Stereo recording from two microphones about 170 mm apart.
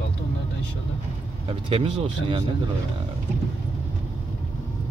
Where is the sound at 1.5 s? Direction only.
35° right (ahead or behind).